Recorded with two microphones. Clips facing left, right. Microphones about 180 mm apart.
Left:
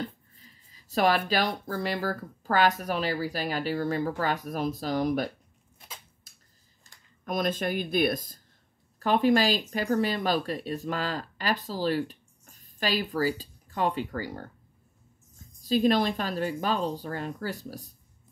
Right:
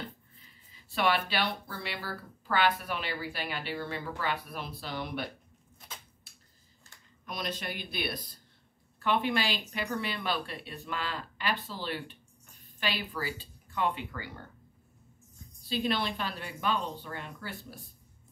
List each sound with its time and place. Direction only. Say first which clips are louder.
0.0 s speech: left 7 dB; 40° left (ahead or behind)
7.2 s speech: left 9 dB; 50° left (ahead or behind)
15.6 s speech: left 8 dB; 40° left (ahead or behind)